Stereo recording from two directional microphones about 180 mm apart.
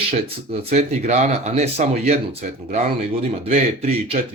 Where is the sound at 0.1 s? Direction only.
35° right (ahead or behind).